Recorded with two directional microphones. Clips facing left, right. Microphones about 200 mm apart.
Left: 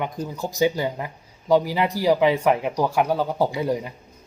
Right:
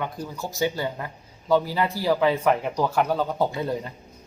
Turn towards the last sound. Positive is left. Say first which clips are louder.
# left 3 dB
turn(degrees=10)  # may be behind; listen again after turning